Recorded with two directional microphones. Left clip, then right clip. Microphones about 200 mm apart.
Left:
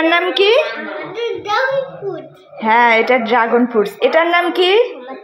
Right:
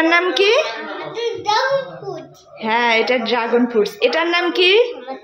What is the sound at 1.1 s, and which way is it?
Speech, 20° right (ahead or behind).